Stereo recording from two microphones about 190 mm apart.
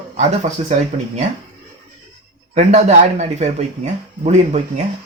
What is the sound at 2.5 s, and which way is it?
Speech, 40° right (ahead or behind).